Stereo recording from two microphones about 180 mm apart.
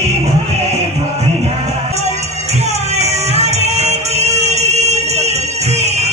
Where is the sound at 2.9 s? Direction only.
35° right (ahead or behind).